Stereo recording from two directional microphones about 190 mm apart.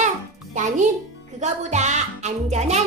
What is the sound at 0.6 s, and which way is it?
Speech, 40° right (ahead or behind).